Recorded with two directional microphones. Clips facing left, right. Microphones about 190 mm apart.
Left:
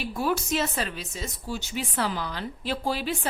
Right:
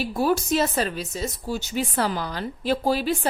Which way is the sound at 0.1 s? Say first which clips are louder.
Right 4 dB; 40° right (ahead or behind).